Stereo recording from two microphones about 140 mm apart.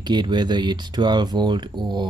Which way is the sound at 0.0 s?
30° right (ahead or behind).